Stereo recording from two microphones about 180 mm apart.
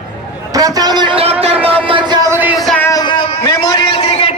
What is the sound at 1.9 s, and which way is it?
Music, 25° right (ahead or behind).